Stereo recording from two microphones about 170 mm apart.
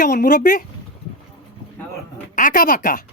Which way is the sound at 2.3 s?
55° left (ahead or behind).